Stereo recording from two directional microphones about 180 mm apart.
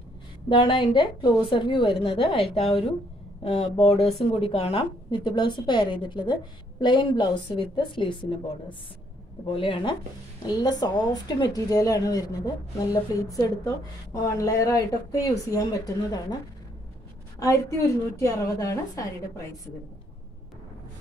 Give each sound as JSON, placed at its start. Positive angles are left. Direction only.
{"t": 0.5, "sound": "speech", "side_deg": 25}
{"t": 9.5, "sound": "speech", "side_deg": 30}
{"t": 17.4, "sound": "a woman's voice", "side_deg": 20}